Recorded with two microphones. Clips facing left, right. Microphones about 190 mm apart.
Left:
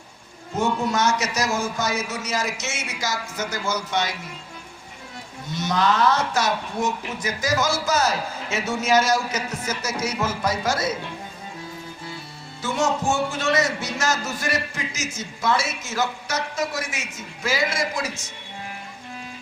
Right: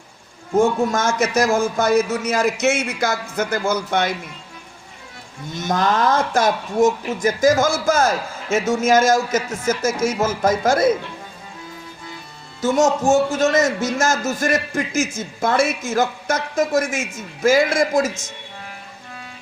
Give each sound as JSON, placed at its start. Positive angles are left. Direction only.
{"t": 0.5, "sound": "a man's voice", "side_deg": -50}
{"t": 5.5, "sound": "a man's voice", "side_deg": -50}
{"t": 12.6, "sound": "a man's voice", "side_deg": -45}